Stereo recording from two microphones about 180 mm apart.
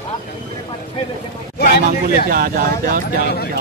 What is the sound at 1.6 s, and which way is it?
Speech, 60° left (ahead or behind).